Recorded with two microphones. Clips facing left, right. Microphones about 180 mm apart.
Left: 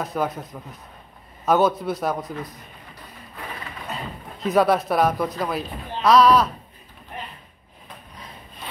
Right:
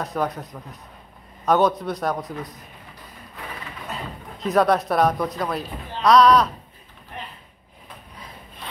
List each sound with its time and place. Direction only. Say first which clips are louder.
0.0 s a man's voice: even; centre (ahead or behind)
3.9 s a man's voice: even; centre (ahead or behind)